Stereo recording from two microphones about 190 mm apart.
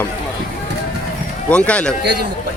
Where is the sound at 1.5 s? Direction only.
5° left (ahead or behind).